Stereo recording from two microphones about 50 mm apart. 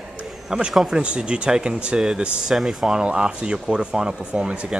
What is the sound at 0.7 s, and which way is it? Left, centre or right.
A woman's voice, centre.